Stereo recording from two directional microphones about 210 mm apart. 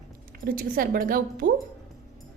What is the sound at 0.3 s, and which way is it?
A woman's voice, 45° right (ahead or behind).